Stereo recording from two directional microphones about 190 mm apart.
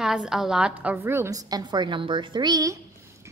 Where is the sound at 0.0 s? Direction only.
Centre (ahead or behind).